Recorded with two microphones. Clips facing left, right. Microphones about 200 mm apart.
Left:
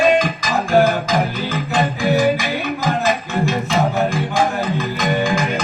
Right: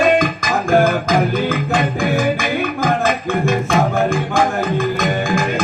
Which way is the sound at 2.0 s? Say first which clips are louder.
Left 1 dB; 50° right (ahead or behind).